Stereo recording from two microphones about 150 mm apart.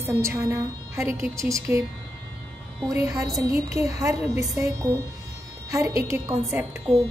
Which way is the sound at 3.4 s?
20° right (ahead or behind).